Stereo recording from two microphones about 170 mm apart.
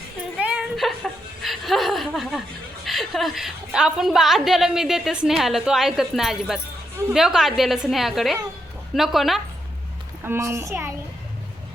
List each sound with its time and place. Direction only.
0.3 s a sound: 5° right (ahead or behind)
2.8 s a woman's voice: centre (ahead or behind)
10.2 s a woman's voice: 15° right (ahead or behind)